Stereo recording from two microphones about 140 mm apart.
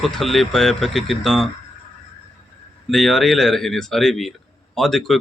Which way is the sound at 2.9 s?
Centre (ahead or behind).